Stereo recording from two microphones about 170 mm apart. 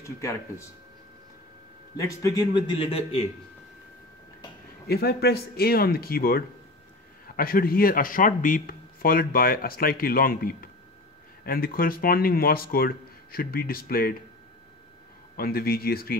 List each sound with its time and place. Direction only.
0.0 s speech: 15° left (ahead or behind)
2.0 s a man's voice: 20° left (ahead or behind); by 3.3 s 35° left (ahead or behind)
4.8 s speech: 70° left (ahead or behind)
15.3 s speech: 60° left (ahead or behind)